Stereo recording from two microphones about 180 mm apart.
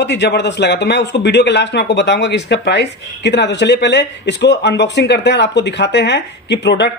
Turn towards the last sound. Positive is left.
turn(degrees=75)  # may be behind; listen again after turning